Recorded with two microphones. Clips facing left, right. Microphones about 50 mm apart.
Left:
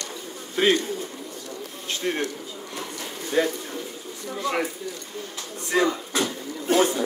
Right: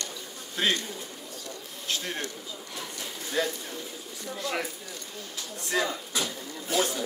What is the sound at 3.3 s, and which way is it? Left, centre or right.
Speech, left.